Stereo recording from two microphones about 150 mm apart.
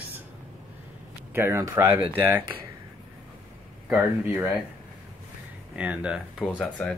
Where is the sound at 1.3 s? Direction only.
15° right (ahead or behind).